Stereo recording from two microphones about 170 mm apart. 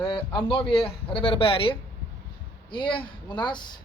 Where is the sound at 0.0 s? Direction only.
30° left (ahead or behind).